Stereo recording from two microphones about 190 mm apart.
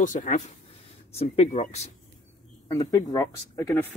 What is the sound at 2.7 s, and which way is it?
Speech, 15° left (ahead or behind).